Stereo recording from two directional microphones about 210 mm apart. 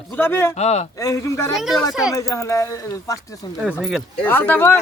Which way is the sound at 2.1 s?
15° left (ahead or behind).